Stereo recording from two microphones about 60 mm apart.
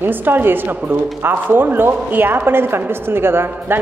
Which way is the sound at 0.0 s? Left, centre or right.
Right.